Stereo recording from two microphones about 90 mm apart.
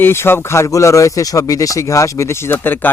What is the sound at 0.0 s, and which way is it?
Speech, 25° left (ahead or behind).